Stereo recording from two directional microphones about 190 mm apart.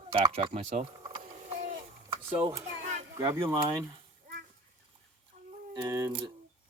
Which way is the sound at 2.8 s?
40° right (ahead or behind).